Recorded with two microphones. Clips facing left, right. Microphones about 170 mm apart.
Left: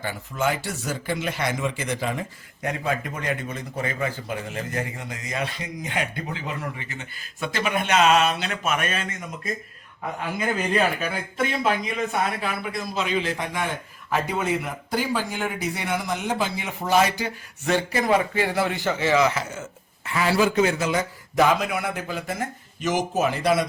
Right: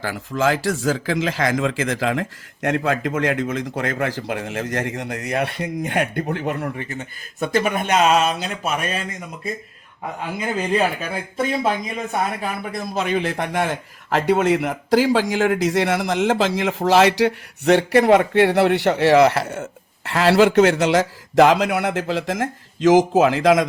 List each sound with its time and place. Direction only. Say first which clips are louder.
0.0 s speech: right 5 dB; 90° right; by 6.8 s 55° right (ahead or behind)
7.3 s speech: right 5 dB; 45° right (ahead or behind)
11.1 s speech: right 3 dB; 30° right (ahead or behind)
12.4 s speech: right 2 dB; 50° right (ahead or behind); by 23.6 s 90° right